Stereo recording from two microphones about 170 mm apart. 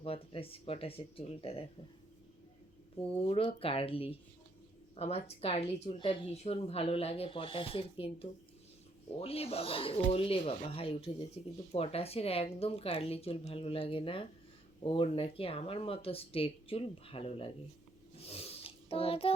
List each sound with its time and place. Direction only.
0.0 s a woman's voice: 35° left (ahead or behind)
3.0 s a woman's voice: 35° left (ahead or behind)
18.2 s a sound: 35° left (ahead or behind)